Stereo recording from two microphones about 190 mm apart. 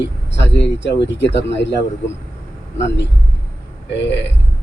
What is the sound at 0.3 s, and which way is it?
Speech, 70° left (ahead or behind).